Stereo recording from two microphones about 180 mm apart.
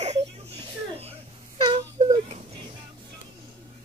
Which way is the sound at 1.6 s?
35° right (ahead or behind).